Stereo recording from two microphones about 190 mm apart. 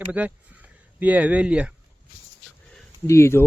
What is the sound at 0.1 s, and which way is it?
Speech, 10° right (ahead or behind).